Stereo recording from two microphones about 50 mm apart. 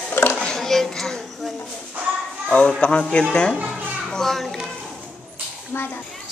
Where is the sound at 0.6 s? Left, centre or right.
Centre.